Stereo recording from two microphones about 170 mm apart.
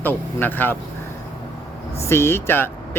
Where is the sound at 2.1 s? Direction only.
15° left (ahead or behind).